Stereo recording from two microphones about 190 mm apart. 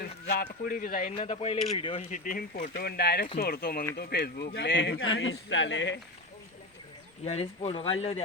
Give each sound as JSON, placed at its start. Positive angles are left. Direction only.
{"t": 0.6, "sound": "speech", "side_deg": 50}
{"t": 1.1, "sound": "speech", "side_deg": 30}
{"t": 5.1, "sound": "speech", "side_deg": 90}
{"t": 7.3, "sound": "speech", "side_deg": 30}